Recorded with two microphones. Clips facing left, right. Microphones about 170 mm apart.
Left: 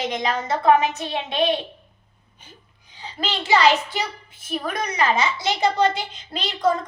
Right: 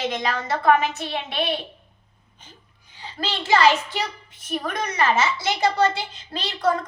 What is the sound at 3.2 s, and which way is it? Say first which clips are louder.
A child's voice: even; 15° left (ahead or behind).